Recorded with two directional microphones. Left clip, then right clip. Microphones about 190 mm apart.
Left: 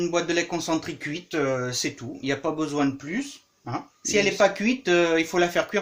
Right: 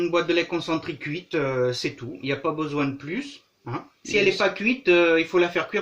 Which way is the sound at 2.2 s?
55° left (ahead or behind).